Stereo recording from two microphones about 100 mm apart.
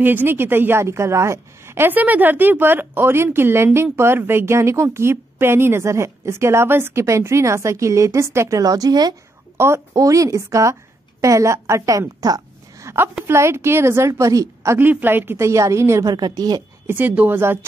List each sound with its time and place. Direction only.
0.0 s a woman's voice: 20° right (ahead or behind); by 9.1 s 40° right (ahead or behind)
9.6 s a woman's voice: 30° right (ahead or behind)
12.8 s a woman's voice: 25° right (ahead or behind)
14.9 s a woman's voice: 20° right (ahead or behind)
16.1 s a woman's voice: 45° right (ahead or behind)
16.8 s a woman's voice: 20° right (ahead or behind)